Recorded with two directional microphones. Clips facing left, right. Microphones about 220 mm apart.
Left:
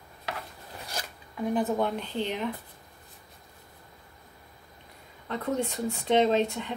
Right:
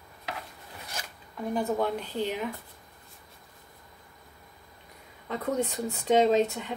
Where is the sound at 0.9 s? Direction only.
35° left (ahead or behind).